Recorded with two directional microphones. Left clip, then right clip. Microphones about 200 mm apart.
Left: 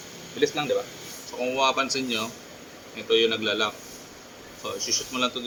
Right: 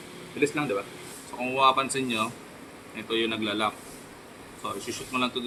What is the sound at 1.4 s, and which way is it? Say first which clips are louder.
Speech: right 1 dB; 20° right (ahead or behind).